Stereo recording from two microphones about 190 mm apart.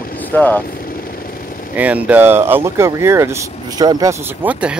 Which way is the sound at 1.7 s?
10° right (ahead or behind).